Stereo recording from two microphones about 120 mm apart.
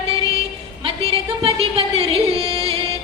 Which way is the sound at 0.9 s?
50° right (ahead or behind).